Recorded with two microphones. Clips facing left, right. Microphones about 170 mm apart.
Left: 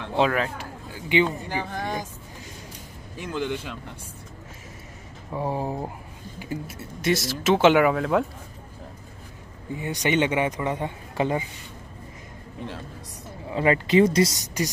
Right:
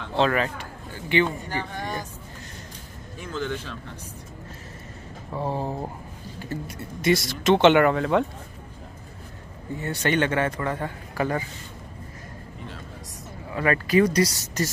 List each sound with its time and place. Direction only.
0.3 s a sound: centre (ahead or behind)
1.0 s a man's voice: 15° left (ahead or behind)
3.3 s a man's voice: 15° left (ahead or behind)
5.3 s a man's voice: 10° left (ahead or behind)
9.8 s a man's voice: 15° left (ahead or behind)
13.5 s speech: 25° left (ahead or behind)